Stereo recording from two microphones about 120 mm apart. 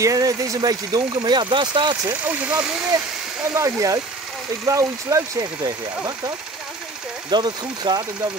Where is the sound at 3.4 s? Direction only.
25° right (ahead or behind).